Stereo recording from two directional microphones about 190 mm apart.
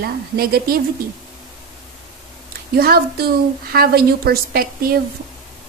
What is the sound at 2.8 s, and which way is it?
A woman's voice, 55° right (ahead or behind).